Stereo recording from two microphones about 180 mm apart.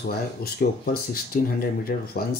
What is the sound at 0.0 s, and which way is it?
Speech, 60° left (ahead or behind).